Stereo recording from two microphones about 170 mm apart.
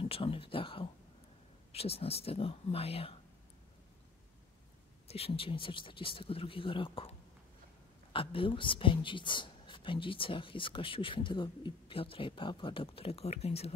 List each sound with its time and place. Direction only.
0.0 s speech: 35° left (ahead or behind)
5.0 s speech: 35° left (ahead or behind)